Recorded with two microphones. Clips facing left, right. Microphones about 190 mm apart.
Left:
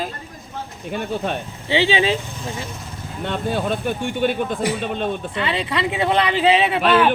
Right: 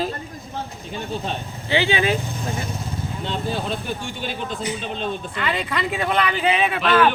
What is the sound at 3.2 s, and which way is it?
Speech, 55° left (ahead or behind).